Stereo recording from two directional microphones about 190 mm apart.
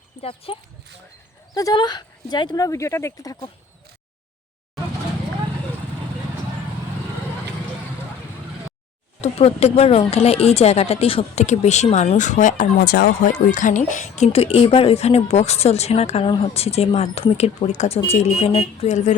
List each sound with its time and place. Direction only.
0.2 s speech: 30° left (ahead or behind)
9.2 s a woman's voice: 35° left (ahead or behind); by 13.3 s 55° left (ahead or behind)
13.5 s a woman's voice: 40° left (ahead or behind)